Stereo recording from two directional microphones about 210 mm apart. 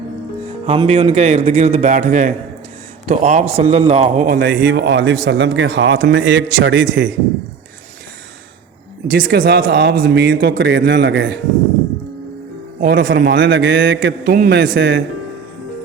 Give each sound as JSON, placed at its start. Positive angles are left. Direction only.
{"t": 0.6, "sound": "a man's voice", "side_deg": -30}
{"t": 4.4, "sound": "speech", "side_deg": -55}
{"t": 9.1, "sound": "a man's voice", "side_deg": -40}
{"t": 12.8, "sound": "a man's voice", "side_deg": -45}
{"t": 13.1, "sound": "speech", "side_deg": -60}
{"t": 14.3, "sound": "speech", "side_deg": -50}